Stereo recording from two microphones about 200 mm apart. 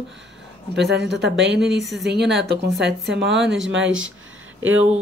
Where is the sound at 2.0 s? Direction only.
55° right (ahead or behind).